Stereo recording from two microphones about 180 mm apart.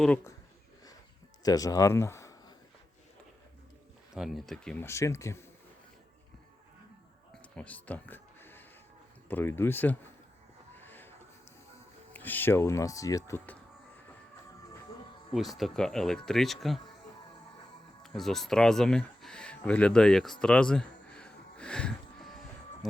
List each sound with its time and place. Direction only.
1.4 s speech: 20° left (ahead or behind)
4.1 s speech: centre (ahead or behind); by 5.5 s 15° left (ahead or behind)
7.5 s music: 5° left (ahead or behind)
9.3 s speech: 10° left (ahead or behind)
10.8 s a sound: 10° left (ahead or behind)
12.1 s speech: 10° left (ahead or behind)
15.3 s speech: centre (ahead or behind)
18.0 s speech: centre (ahead or behind)
20.4 s a sound: 5° left (ahead or behind)